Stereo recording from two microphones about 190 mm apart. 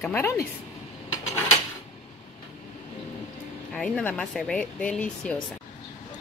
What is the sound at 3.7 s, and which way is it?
Speech, 5° left (ahead or behind).